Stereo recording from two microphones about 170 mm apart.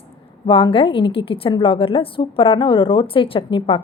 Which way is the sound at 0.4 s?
30° left (ahead or behind).